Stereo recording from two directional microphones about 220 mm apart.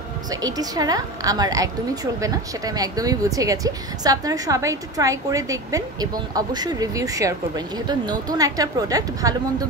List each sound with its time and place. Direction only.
0.3 s a woman's voice: 15° right (ahead or behind)